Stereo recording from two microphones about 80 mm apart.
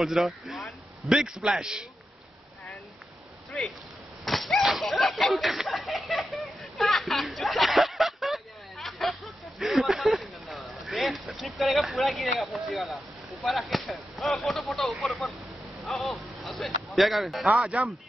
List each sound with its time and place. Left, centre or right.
0.0 s a man's voice: centre
4.2 s a sound: centre
15.8 s speech: centre
17.5 s speech: centre